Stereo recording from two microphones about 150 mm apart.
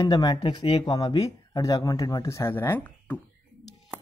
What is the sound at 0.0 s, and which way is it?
Speech, 25° left (ahead or behind).